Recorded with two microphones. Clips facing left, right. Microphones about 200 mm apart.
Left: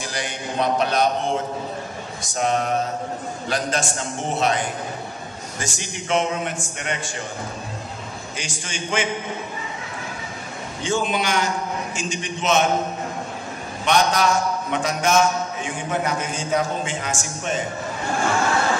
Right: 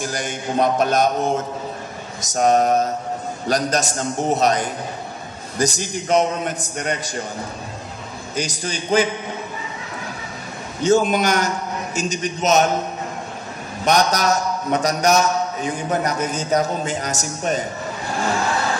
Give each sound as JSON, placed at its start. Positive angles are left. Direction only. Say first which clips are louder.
{"t": 0.0, "sound": "a man's voice", "louder": "right 3 dB", "side_deg": -45}
{"t": 8.4, "sound": "a man's voice", "louder": "right 8 dB", "side_deg": -40}
{"t": 10.8, "sound": "a man's voice", "louder": "right 7 dB", "side_deg": -40}
{"t": 13.8, "sound": "a man's voice", "louder": "right 1 dB", "side_deg": -40}